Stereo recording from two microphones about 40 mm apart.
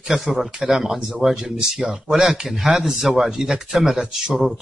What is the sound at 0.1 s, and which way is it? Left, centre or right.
Speech, centre.